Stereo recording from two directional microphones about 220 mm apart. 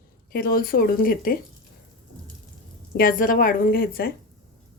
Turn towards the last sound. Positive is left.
turn(degrees=40)  # may be behind; listen again after turning